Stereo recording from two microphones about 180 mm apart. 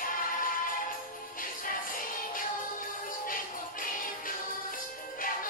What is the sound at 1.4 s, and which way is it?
Music, 50° left (ahead or behind).